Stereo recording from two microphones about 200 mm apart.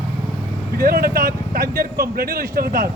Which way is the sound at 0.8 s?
50° right (ahead or behind).